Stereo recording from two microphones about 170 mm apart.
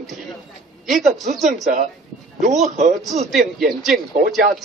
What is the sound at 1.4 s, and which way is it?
Speech, 45° right (ahead or behind).